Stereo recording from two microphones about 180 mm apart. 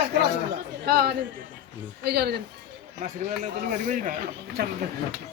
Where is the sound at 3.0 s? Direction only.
45° right (ahead or behind).